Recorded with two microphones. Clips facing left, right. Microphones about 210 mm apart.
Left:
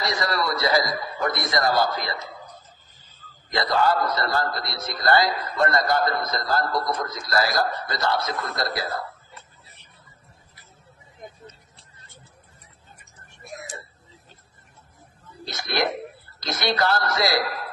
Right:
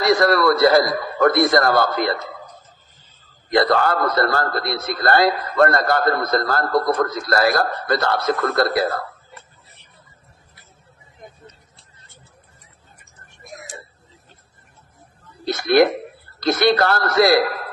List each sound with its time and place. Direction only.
0.0 s a man's voice: 55° right (ahead or behind)
3.4 s a man's voice: 60° right (ahead or behind)
15.4 s a man's voice: 55° right (ahead or behind)